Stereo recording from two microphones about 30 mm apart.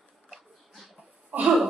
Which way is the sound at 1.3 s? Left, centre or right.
Right.